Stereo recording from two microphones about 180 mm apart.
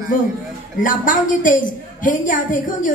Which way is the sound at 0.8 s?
50° left (ahead or behind).